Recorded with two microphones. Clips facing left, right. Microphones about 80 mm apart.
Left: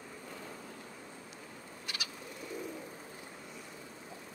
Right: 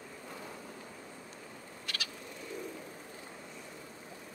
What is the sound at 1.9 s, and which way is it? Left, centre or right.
Frog, centre.